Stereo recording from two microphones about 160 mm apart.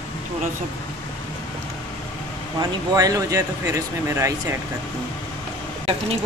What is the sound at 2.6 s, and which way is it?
Speech, 20° right (ahead or behind).